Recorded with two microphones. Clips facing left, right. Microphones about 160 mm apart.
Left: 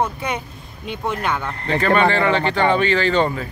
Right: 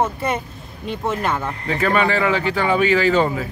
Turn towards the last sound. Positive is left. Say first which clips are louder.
# right 1 dB
turn(degrees=-5)  # may be behind; listen again after turning